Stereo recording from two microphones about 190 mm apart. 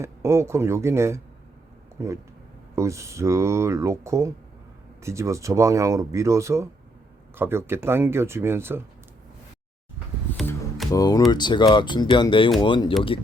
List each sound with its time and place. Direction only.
0.0 s speech: 15° right (ahead or behind)
10.9 s speech: 20° left (ahead or behind)